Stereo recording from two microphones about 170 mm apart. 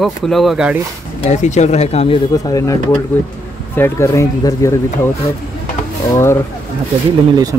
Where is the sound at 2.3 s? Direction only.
20° left (ahead or behind).